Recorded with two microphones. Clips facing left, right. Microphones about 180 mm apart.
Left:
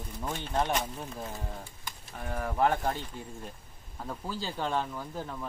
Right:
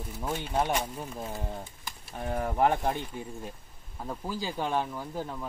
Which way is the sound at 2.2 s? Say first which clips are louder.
Right 2 dB; 20° right (ahead or behind).